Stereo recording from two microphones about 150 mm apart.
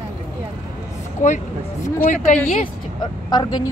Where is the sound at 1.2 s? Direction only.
60° left (ahead or behind).